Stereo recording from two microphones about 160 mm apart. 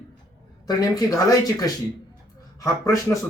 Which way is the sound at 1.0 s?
20° left (ahead or behind).